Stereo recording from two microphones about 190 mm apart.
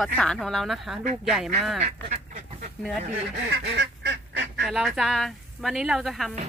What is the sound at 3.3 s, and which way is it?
Duck, 60° right (ahead or behind).